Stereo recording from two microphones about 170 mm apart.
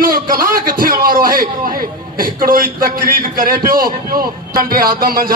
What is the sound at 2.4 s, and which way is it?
A man's voice, 55° right (ahead or behind).